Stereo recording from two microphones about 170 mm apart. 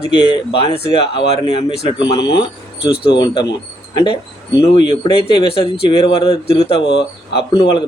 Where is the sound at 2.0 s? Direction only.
30° left (ahead or behind).